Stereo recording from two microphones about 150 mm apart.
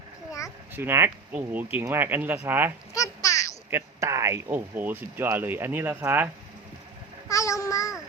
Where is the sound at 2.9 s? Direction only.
20° left (ahead or behind).